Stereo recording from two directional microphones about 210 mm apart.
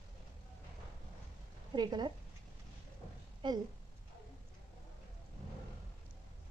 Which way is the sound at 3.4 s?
20° right (ahead or behind).